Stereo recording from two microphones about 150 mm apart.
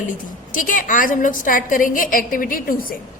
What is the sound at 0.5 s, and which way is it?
A woman's voice, 65° left (ahead or behind).